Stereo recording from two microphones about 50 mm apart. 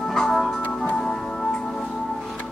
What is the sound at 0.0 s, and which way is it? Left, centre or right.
Music, centre.